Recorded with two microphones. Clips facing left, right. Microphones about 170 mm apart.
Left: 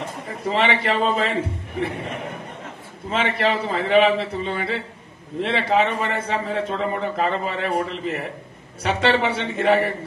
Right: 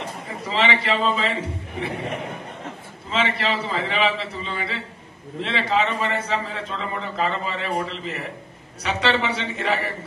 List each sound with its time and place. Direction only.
0.5 s a man's voice: 50° left (ahead or behind)
3.1 s a man's voice: 55° left (ahead or behind)